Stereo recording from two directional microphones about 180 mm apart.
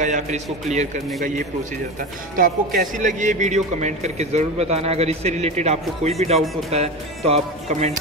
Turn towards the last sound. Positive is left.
turn(degrees=-35)  # may be behind; listen again after turning